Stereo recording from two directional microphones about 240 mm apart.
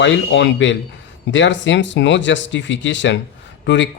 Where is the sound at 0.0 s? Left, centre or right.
Left.